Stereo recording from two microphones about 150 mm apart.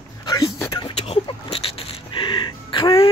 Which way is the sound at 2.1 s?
30° left (ahead or behind).